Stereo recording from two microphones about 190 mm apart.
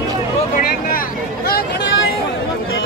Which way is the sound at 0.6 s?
50° left (ahead or behind).